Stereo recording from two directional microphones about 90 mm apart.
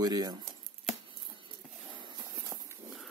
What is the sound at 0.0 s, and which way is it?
Speech, 45° right (ahead or behind).